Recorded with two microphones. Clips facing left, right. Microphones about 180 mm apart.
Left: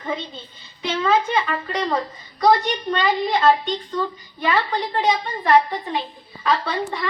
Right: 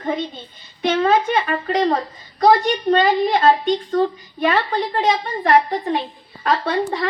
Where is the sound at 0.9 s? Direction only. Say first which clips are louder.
Right 4 dB; 50° right (ahead or behind).